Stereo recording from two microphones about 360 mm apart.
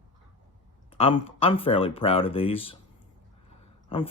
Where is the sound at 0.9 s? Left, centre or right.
Centre.